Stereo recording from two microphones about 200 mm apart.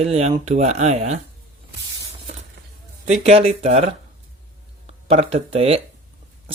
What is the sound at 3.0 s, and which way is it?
Speech, 35° right (ahead or behind).